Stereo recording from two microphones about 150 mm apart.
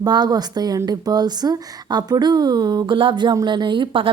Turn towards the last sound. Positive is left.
turn(degrees=-35)  # may be behind; listen again after turning